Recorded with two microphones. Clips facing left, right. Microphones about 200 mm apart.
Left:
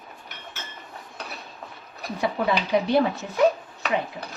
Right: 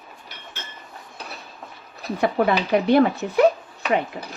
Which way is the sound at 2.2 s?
60° right (ahead or behind).